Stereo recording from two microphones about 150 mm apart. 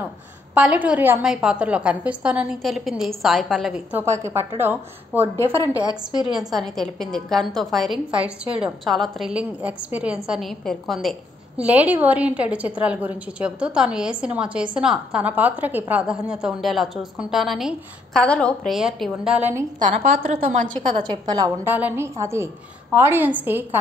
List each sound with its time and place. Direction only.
0.6 s a woman's voice: 10° right (ahead or behind)
4.0 s a woman's voice: 20° right (ahead or behind)
6.2 s a woman's voice: 5° right (ahead or behind)
11.6 s a woman's voice: 10° right (ahead or behind)
20.0 s a woman's voice: 70° right (ahead or behind)
20.7 s a woman's voice: 30° right (ahead or behind)
21.6 s a woman's voice: 10° right (ahead or behind)